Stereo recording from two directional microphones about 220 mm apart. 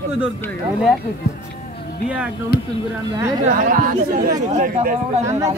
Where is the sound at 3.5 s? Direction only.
40° right (ahead or behind).